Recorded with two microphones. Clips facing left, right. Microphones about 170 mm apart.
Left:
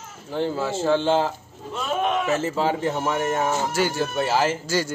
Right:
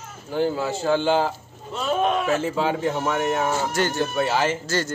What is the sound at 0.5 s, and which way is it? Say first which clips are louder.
Speech: left 1 dB; centre (ahead or behind).